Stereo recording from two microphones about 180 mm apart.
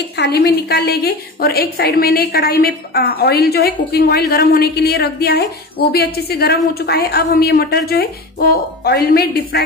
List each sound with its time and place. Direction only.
0.2 s a woman's voice: 65° left (ahead or behind)